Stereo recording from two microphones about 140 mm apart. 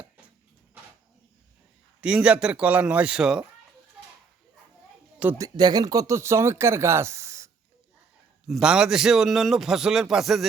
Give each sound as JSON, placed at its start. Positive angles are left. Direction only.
{"t": 2.0, "sound": "a man's voice", "side_deg": -5}
{"t": 5.4, "sound": "speech", "side_deg": -30}
{"t": 8.4, "sound": "a man's voice", "side_deg": -5}